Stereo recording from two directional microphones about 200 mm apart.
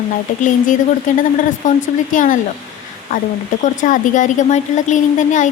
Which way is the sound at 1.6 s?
40° left (ahead or behind).